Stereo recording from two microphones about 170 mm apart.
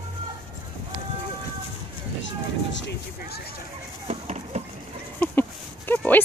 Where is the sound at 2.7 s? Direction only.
90° left.